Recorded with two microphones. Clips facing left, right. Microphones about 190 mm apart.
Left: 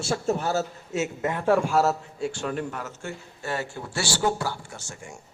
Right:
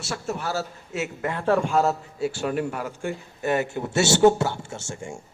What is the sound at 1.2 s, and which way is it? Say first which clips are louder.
A man's voice: even; 15° left (ahead or behind).